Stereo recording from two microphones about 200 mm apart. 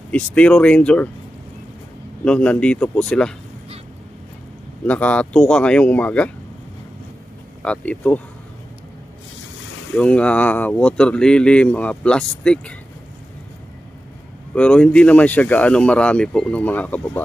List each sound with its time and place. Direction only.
0.1 s speech: 5° left (ahead or behind)
2.2 s speech: 5° left (ahead or behind)
4.8 s speech: 5° left (ahead or behind)
7.6 s speech: 5° left (ahead or behind)
9.9 s speech: 5° left (ahead or behind)
14.5 s speech: 5° left (ahead or behind)